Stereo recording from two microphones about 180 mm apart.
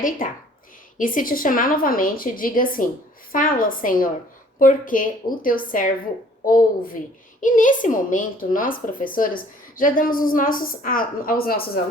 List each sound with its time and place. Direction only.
0.2 s a woman's voice: 50° left (ahead or behind)